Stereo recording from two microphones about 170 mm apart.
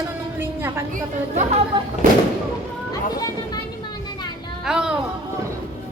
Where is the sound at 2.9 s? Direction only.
20° left (ahead or behind).